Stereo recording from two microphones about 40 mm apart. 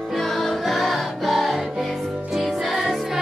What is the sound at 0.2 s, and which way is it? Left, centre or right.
Music, centre.